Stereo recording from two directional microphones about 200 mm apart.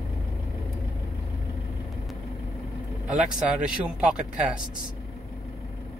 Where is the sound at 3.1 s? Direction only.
5° right (ahead or behind).